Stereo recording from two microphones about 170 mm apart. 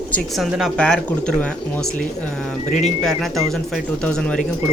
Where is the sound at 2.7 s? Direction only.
45° left (ahead or behind).